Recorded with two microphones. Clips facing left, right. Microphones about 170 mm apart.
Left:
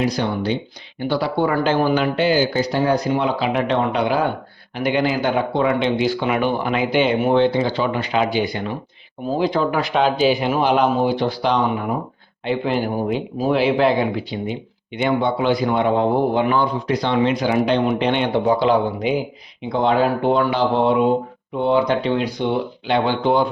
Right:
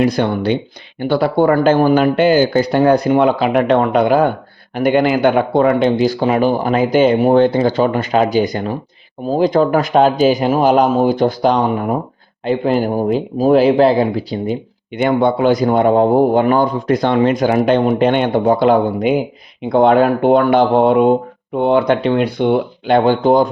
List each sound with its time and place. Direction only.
0.0 s speech: 55° right (ahead or behind)